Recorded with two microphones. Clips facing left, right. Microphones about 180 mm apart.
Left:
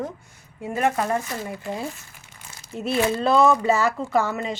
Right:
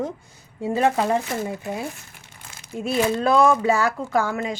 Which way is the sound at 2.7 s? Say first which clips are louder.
Right 1 dB; centre (ahead or behind).